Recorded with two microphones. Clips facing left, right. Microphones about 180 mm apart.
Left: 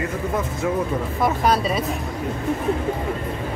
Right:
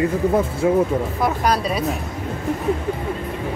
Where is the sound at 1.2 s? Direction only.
Centre (ahead or behind).